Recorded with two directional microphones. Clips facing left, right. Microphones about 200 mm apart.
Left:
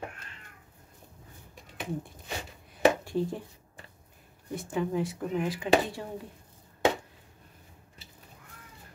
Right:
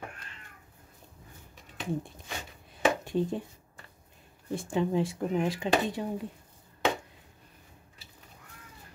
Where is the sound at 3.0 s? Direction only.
20° right (ahead or behind).